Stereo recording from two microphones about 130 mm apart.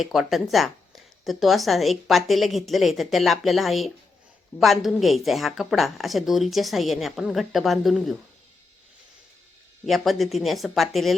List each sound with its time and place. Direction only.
0.0 s a woman's voice: centre (ahead or behind)
9.8 s a woman's voice: centre (ahead or behind)